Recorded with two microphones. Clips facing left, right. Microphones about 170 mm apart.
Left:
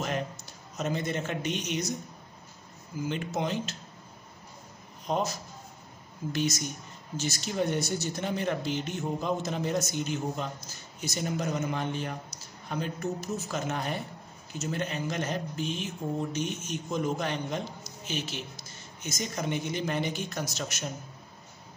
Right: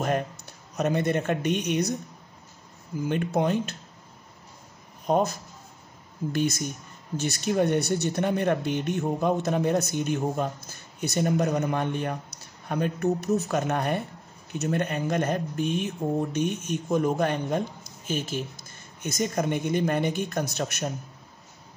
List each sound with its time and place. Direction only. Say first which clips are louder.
0.7 s speech: right 6 dB; 60° right (ahead or behind)
3.1 s speech: right 7 dB; 55° right (ahead or behind)
5.0 s speech: right 6 dB; 50° right (ahead or behind)